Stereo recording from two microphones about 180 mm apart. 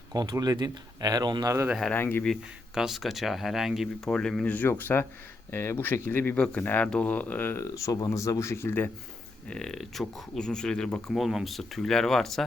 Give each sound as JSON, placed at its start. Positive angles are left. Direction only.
{"t": 0.1, "sound": "speech", "side_deg": -20}
{"t": 1.6, "sound": "speech", "side_deg": 0}
{"t": 1.9, "sound": "speech", "side_deg": 10}
{"t": 2.3, "sound": "speech", "side_deg": 0}